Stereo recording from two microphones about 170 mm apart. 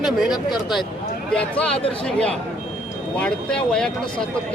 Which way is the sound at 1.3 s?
5° left (ahead or behind).